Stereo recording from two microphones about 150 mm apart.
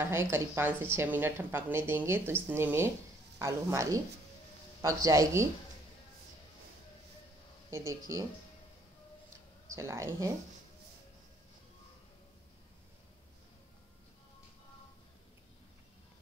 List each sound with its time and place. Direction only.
0.0 s a woman's voice: 15° right (ahead or behind)
7.7 s a woman's voice: 20° right (ahead or behind)
9.8 s a woman's voice: 20° right (ahead or behind)